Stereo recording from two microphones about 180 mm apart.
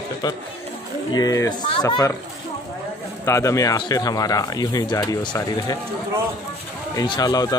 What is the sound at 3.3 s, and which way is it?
Speech, 15° left (ahead or behind).